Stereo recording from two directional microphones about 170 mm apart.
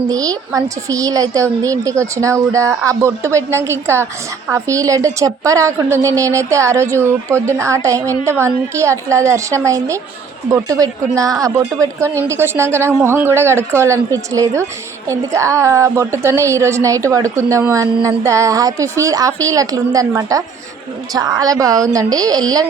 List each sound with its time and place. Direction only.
0.1 s a woman's voice: 20° right (ahead or behind)